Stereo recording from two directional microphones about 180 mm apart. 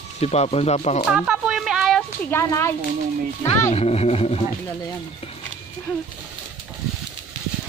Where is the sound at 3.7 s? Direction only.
35° left (ahead or behind).